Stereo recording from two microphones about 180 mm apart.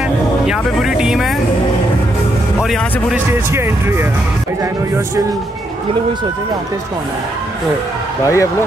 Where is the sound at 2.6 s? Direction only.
Centre (ahead or behind).